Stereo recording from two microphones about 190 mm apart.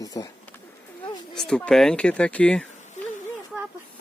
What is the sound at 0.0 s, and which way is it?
Speech, 20° left (ahead or behind).